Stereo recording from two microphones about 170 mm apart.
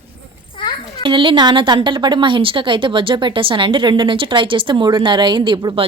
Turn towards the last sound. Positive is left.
turn(degrees=-30)  # may be behind; listen again after turning